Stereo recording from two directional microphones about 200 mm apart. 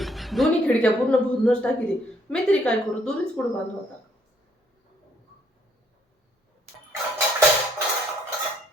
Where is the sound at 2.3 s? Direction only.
5° left (ahead or behind).